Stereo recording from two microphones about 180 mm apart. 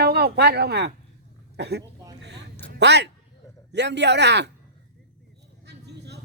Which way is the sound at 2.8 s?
70° right (ahead or behind).